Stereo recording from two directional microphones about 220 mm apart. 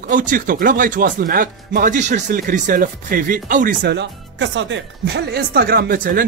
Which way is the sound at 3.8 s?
55° right (ahead or behind).